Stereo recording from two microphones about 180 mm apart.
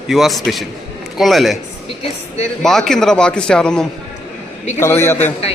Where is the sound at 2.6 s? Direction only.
Centre (ahead or behind).